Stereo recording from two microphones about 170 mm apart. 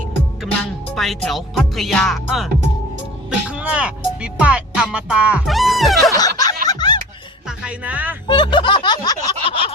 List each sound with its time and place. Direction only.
0.9 s speech: centre (ahead or behind)
6.1 s snicker: 20° left (ahead or behind)
6.7 s music: 25° left (ahead or behind)
7.4 s music: 5° right (ahead or behind)
8.3 s speech: 30° left (ahead or behind)